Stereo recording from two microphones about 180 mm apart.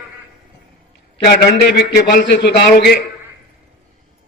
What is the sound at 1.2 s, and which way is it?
A man's voice, 60° left (ahead or behind).